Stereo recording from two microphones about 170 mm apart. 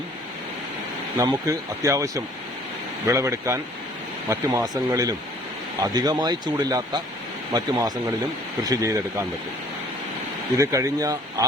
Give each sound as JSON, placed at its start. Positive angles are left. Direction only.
{"t": 1.5, "sound": "speech", "side_deg": -20}
{"t": 10.6, "sound": "speech", "side_deg": -20}